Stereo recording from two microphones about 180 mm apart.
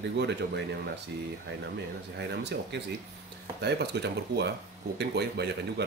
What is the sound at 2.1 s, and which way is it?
Speech, 70° right (ahead or behind).